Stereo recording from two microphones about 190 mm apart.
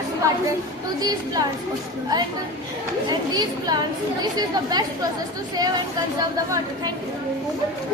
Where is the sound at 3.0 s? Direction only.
20° right (ahead or behind).